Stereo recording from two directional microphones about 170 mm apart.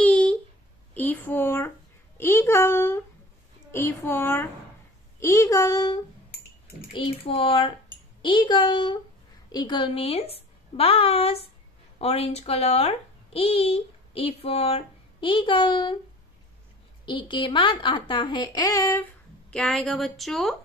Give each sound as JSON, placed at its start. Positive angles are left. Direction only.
{"t": 0.0, "sound": "a sound", "side_deg": 10}
{"t": 2.1, "sound": "a child's voice", "side_deg": 15}
{"t": 6.9, "sound": "a woman's voice", "side_deg": 30}
{"t": 17.0, "sound": "speech", "side_deg": 25}
{"t": 19.5, "sound": "a woman's voice", "side_deg": 5}